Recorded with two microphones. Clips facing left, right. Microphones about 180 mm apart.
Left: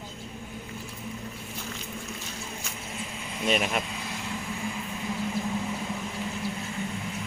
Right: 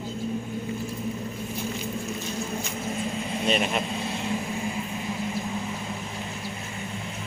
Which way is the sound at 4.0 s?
25° right (ahead or behind).